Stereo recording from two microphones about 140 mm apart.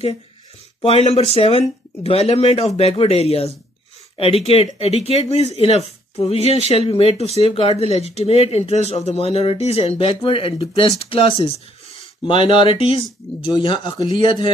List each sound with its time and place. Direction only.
0.8 s speech: 50° left (ahead or behind)